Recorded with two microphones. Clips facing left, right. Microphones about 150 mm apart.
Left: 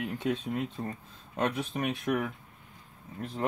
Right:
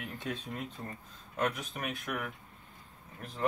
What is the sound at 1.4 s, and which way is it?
Speech, 30° left (ahead or behind).